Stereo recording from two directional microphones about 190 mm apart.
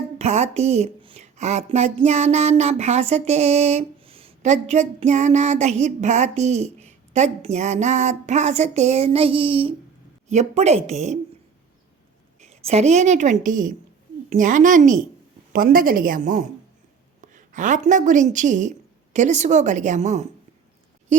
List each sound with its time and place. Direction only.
0.2 s speech: 35° right (ahead or behind)
12.4 s a woman's voice: 35° right (ahead or behind)